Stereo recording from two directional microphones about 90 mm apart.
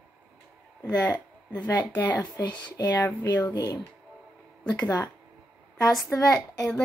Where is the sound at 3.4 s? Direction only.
40° left (ahead or behind).